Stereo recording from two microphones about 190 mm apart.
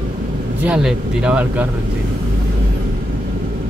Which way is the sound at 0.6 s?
5° right (ahead or behind).